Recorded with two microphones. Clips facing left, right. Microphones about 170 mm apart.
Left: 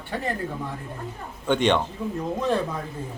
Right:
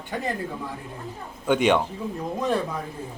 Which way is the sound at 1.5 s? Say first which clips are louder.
Right 1 dB; 10° right (ahead or behind).